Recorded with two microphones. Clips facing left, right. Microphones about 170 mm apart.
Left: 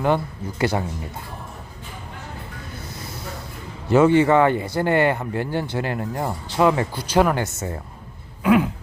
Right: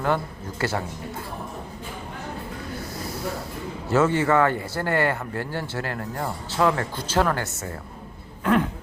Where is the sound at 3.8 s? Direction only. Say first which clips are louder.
Left 5 dB; 20° left (ahead or behind).